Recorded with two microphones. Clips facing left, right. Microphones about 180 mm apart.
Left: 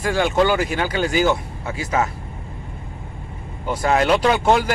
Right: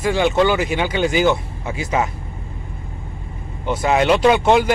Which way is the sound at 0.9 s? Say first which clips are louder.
Right 2 dB; 45° left (ahead or behind).